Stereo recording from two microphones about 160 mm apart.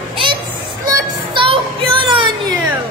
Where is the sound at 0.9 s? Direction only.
30° right (ahead or behind).